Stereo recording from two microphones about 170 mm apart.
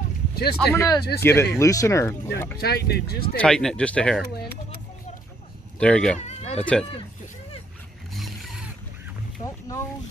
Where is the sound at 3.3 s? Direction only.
5° left (ahead or behind).